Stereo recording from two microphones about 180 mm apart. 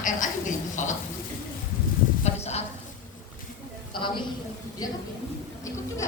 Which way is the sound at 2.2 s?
35° left (ahead or behind).